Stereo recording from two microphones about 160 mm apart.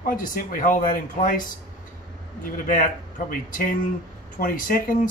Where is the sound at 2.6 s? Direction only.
55° left (ahead or behind).